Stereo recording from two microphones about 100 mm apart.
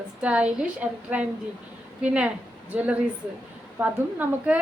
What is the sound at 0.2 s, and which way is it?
A woman's voice, 10° right (ahead or behind).